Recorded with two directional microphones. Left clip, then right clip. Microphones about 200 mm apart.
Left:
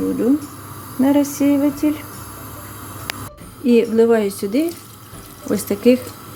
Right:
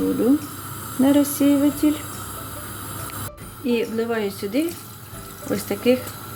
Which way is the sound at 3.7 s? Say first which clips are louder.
Left 9 dB; 30° left (ahead or behind).